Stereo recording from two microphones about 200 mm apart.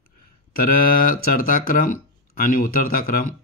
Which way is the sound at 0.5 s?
45° left (ahead or behind).